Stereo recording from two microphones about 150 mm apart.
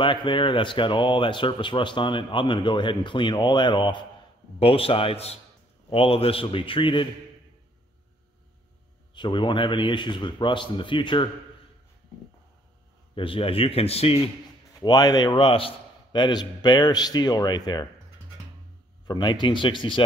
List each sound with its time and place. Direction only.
0.0 s speech: 30° left (ahead or behind)
9.1 s speech: 30° left (ahead or behind)
13.1 s speech: 35° left (ahead or behind)
14.8 s a man's voice: 25° left (ahead or behind)
19.0 s speech: 30° left (ahead or behind)